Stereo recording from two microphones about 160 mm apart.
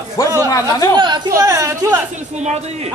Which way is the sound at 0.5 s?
20° left (ahead or behind).